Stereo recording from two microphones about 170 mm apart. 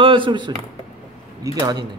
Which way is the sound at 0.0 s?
30° right (ahead or behind).